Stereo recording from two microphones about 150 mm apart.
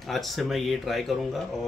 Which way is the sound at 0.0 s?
Centre (ahead or behind).